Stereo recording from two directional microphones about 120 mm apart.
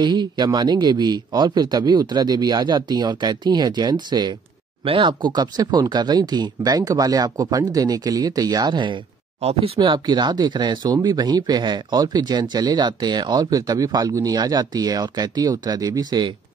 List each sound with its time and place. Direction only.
0.0 s speech: 40° right (ahead or behind)
4.8 s speech: 50° right (ahead or behind)
9.4 s speech: 60° right (ahead or behind)
9.8 s speech: 40° right (ahead or behind)